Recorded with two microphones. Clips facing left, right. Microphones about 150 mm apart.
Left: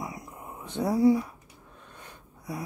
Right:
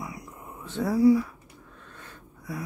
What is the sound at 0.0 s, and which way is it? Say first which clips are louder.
Dog: left 1 dB; 20° left (ahead or behind).